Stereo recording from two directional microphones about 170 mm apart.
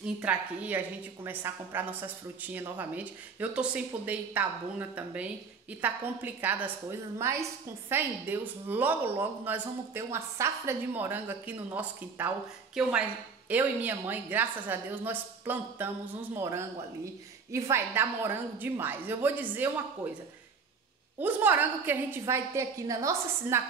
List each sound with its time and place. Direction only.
0.0 s speech: 5° right (ahead or behind)
13.5 s speech: 10° right (ahead or behind)
21.2 s speech: 10° right (ahead or behind)